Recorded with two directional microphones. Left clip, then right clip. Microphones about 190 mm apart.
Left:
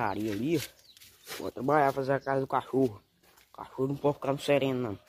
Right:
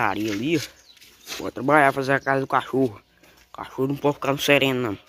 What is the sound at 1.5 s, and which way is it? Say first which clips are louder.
Speech: right 8 dB; 15° right (ahead or behind).